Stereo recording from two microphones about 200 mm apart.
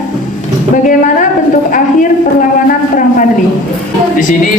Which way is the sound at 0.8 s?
40° left (ahead or behind).